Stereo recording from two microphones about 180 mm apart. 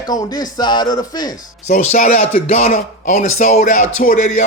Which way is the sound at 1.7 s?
40° left (ahead or behind).